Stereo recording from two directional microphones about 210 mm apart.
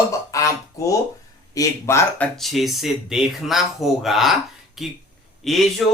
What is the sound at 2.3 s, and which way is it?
Speech, centre (ahead or behind).